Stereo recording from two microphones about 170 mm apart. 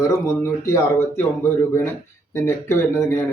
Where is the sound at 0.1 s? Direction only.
15° left (ahead or behind).